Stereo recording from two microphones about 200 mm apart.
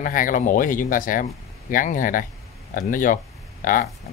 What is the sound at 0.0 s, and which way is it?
Speech, 40° left (ahead or behind).